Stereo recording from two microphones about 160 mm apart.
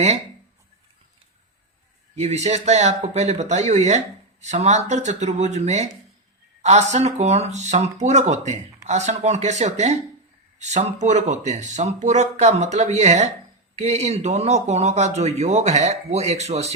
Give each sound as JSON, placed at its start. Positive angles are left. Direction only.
{"t": 2.1, "sound": "a man's voice", "side_deg": -40}